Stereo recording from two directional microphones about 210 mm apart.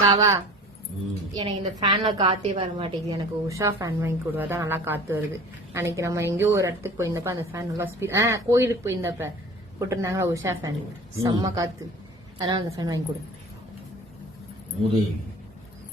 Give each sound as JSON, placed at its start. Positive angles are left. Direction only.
{"t": 0.0, "sound": "a woman's voice", "side_deg": -15}